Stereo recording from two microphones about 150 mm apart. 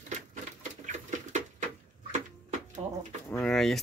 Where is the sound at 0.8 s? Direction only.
55° right (ahead or behind).